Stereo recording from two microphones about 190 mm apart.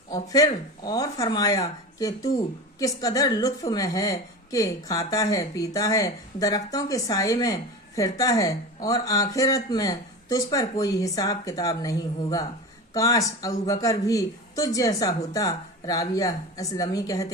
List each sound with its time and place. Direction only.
0.1 s a woman's voice: 20° left (ahead or behind)